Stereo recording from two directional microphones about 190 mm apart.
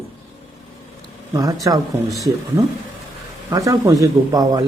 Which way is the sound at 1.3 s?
20° right (ahead or behind).